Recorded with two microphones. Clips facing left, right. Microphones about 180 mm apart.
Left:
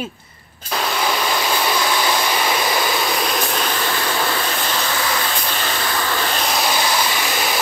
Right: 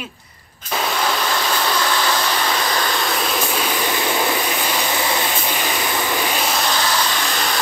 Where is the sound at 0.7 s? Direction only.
Centre (ahead or behind); by 5.3 s 20° right (ahead or behind).